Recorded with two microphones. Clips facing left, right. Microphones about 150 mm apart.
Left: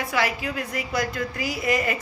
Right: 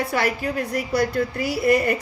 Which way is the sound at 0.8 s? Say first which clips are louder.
Right 6 dB; 35° right (ahead or behind).